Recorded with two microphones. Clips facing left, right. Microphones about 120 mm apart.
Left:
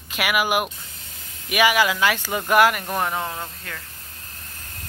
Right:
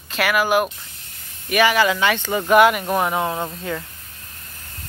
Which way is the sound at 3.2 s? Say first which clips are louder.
Right 7 dB; 30° right (ahead or behind).